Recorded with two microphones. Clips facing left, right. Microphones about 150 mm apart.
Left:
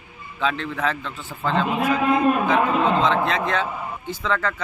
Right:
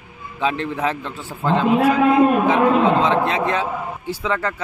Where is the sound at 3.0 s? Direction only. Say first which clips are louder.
Right 3 dB; 10° right (ahead or behind).